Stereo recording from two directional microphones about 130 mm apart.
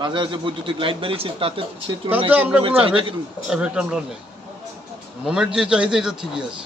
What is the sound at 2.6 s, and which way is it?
Speech, 45° right (ahead or behind).